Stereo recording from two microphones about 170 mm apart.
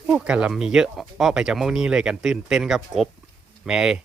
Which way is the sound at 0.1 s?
5° right (ahead or behind).